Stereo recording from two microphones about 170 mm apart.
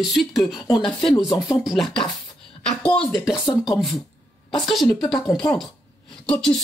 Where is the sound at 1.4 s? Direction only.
5° right (ahead or behind).